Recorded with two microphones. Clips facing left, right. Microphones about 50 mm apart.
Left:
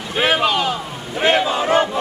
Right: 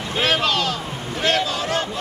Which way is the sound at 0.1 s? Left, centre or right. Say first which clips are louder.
Left 3 dB; centre.